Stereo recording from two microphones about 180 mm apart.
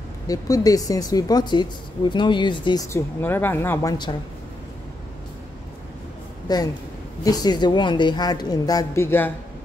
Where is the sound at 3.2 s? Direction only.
10° left (ahead or behind).